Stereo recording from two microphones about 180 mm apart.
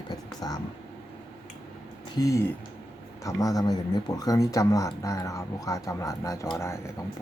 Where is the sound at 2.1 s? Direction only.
15° left (ahead or behind).